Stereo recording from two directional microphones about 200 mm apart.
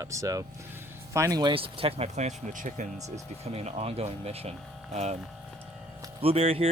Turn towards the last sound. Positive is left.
turn(degrees=-30)  # may be behind; listen again after turning